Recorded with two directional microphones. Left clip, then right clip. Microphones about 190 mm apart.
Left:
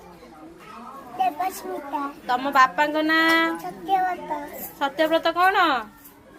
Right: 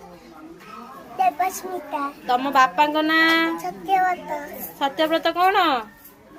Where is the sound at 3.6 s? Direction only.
10° right (ahead or behind).